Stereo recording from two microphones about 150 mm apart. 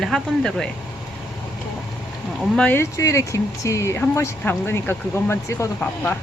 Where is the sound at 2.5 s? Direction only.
5° left (ahead or behind).